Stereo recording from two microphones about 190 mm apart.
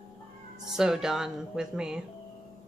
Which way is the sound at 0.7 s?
5° right (ahead or behind).